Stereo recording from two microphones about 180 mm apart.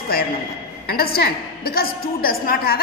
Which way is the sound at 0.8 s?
60° left (ahead or behind).